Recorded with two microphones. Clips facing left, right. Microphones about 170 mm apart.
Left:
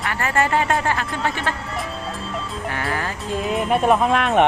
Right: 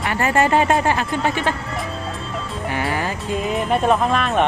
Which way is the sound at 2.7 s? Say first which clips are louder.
Right 4 dB; 10° right (ahead or behind).